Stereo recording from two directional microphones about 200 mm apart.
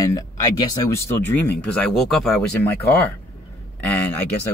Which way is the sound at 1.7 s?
5° left (ahead or behind).